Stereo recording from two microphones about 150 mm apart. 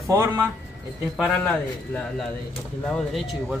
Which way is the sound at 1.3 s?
10° left (ahead or behind).